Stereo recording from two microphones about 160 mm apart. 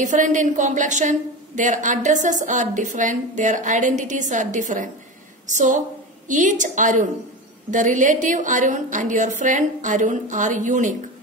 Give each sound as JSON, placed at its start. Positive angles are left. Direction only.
{"t": 0.0, "sound": "a woman's voice", "side_deg": -50}